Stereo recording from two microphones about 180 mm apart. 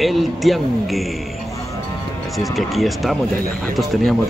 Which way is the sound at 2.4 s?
Centre (ahead or behind).